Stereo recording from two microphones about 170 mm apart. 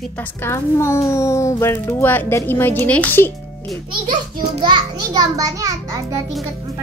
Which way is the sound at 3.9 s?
30° right (ahead or behind).